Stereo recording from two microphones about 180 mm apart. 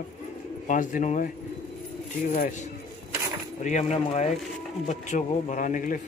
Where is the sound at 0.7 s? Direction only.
45° left (ahead or behind).